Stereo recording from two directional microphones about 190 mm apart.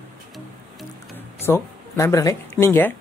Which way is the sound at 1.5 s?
15° left (ahead or behind).